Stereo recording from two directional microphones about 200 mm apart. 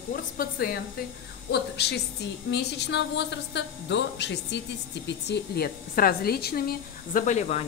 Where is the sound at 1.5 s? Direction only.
55° left (ahead or behind).